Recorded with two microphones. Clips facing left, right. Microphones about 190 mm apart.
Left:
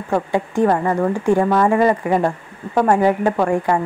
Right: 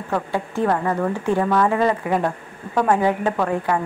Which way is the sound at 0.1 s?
15° left (ahead or behind).